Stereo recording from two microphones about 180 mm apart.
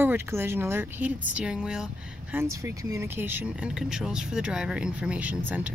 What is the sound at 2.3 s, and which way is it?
Speech, 15° right (ahead or behind).